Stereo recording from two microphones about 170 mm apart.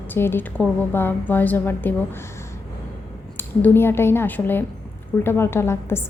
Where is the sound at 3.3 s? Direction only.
15° left (ahead or behind).